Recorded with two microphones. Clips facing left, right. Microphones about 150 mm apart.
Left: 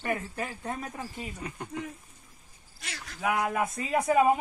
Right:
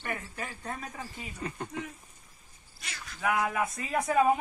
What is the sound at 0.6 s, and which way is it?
Speech, 20° left (ahead or behind).